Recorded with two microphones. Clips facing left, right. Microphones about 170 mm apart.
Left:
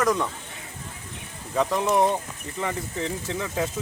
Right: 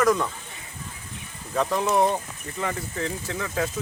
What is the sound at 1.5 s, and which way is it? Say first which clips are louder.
Speech: even; 15° left (ahead or behind).